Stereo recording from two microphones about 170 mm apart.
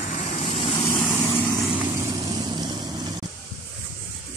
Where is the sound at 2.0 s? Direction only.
20° right (ahead or behind).